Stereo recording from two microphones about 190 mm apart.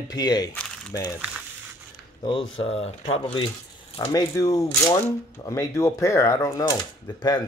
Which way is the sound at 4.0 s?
15° left (ahead or behind).